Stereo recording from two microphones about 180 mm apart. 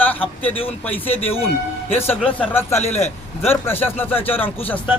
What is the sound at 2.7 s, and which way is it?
Speech, 35° left (ahead or behind).